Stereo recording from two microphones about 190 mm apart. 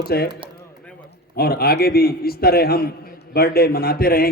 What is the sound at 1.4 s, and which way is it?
A man's voice, 55° left (ahead or behind).